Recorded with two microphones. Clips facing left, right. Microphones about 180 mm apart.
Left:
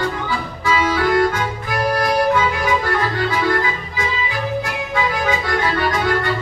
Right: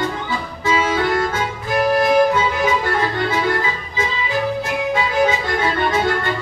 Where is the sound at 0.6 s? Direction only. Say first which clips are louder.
Even; 25° right (ahead or behind).